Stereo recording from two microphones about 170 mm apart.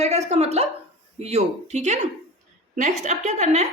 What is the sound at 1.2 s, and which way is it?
A woman's voice, 40° right (ahead or behind).